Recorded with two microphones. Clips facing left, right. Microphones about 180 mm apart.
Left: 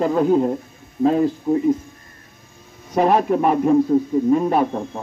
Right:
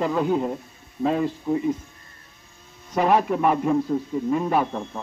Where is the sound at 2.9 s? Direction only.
35° left (ahead or behind).